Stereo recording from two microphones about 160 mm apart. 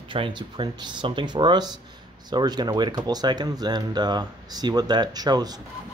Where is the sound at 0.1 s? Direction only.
30° right (ahead or behind).